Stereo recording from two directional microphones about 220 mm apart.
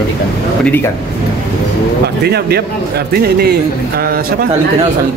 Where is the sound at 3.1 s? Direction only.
45° right (ahead or behind).